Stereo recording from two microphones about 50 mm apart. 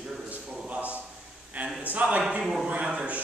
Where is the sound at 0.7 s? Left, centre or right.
Right.